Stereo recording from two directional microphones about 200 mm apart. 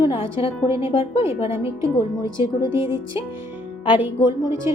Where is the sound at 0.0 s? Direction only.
25° left (ahead or behind).